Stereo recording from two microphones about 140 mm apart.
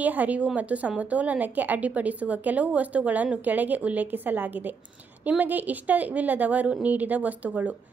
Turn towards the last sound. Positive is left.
turn(degrees=-10)  # may be behind; listen again after turning